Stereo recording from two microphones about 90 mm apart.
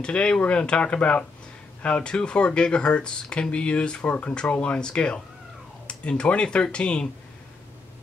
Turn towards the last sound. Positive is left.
turn(degrees=10)  # may be behind; listen again after turning